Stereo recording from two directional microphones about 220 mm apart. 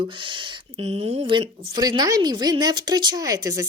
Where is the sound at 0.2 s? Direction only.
20° right (ahead or behind).